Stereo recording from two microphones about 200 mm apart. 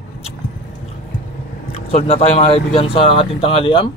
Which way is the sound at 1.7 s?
30° left (ahead or behind).